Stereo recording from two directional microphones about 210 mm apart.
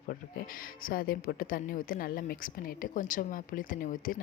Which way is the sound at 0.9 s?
45° left (ahead or behind).